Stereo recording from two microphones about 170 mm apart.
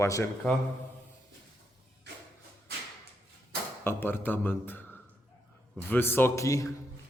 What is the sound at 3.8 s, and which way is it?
A man's voice, 15° left (ahead or behind).